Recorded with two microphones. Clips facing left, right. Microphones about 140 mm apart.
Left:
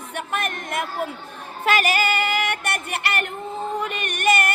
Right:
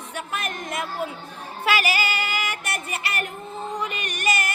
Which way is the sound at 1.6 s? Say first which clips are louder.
Left 3 dB; 50° left (ahead or behind).